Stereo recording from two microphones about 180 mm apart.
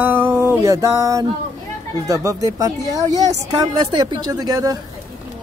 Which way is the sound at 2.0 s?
20° right (ahead or behind).